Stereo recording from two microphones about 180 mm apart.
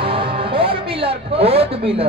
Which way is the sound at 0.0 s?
30° right (ahead or behind).